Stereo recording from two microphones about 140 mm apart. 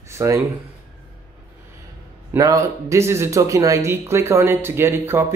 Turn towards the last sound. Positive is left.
turn(degrees=-15)  # may be behind; listen again after turning